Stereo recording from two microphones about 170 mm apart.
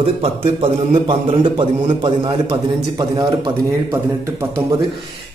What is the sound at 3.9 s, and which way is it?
Speech, 15° right (ahead or behind).